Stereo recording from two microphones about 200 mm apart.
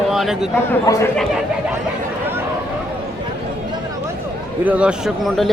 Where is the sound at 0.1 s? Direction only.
Centre (ahead or behind).